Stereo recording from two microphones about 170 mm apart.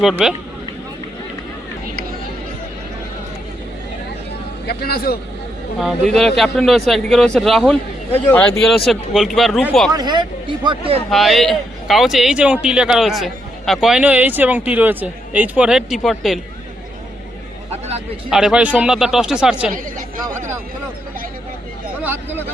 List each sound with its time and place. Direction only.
0.0 s a man's voice: centre (ahead or behind)
4.6 s speech: 65° left (ahead or behind)
5.8 s a man's voice: centre (ahead or behind)
9.9 s speech: 25° right (ahead or behind)
11.1 s a man's voice: centre (ahead or behind)
17.7 s a sound: 40° right (ahead or behind)
18.3 s a man's voice: 5° right (ahead or behind)
22.0 s a sound: 10° right (ahead or behind)